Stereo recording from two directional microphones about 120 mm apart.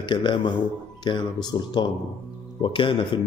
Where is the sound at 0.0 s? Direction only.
40° left (ahead or behind).